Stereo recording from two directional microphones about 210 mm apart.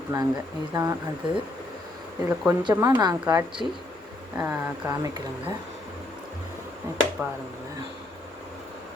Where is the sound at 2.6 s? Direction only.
15° right (ahead or behind).